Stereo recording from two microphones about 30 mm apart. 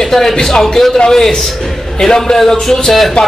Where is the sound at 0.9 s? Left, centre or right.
Left.